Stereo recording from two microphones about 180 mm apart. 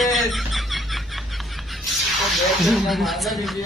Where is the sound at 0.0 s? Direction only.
Centre (ahead or behind).